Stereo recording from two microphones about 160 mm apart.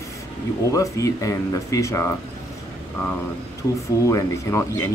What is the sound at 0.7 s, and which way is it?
Speech, 20° left (ahead or behind).